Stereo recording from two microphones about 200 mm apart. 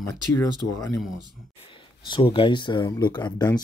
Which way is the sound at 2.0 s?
25° left (ahead or behind).